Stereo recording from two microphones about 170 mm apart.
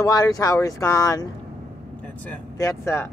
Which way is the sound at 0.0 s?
20° left (ahead or behind).